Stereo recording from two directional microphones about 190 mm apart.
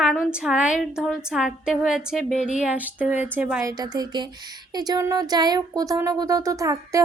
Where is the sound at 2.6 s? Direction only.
5° right (ahead or behind).